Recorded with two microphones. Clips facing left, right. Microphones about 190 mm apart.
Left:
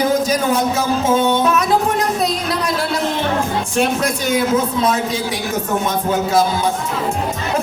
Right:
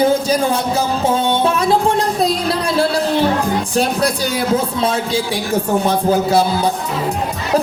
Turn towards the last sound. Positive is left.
turn(degrees=-35)  # may be behind; listen again after turning